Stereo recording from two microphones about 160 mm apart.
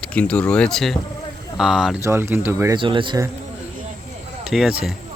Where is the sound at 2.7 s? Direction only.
30° right (ahead or behind).